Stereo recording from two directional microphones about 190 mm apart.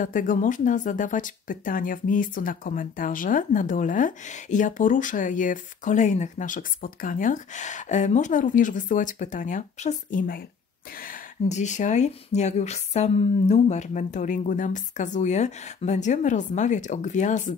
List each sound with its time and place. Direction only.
0.0 s speech: 45° left (ahead or behind)